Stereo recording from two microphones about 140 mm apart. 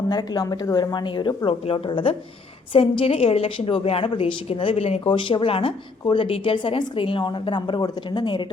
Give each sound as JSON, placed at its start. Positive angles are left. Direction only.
{"t": 0.1, "sound": "a woman's voice", "side_deg": 30}